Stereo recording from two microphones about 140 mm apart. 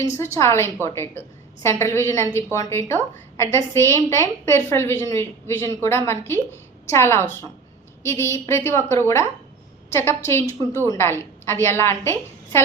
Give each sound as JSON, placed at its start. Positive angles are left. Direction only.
{"t": 0.0, "sound": "a woman's voice", "side_deg": 20}